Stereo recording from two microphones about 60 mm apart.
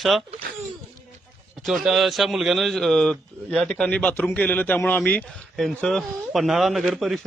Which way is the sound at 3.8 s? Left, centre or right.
Left.